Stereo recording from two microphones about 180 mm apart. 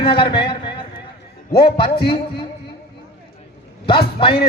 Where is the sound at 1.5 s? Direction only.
30° left (ahead or behind).